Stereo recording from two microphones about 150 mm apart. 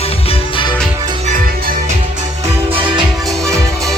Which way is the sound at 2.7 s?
35° right (ahead or behind).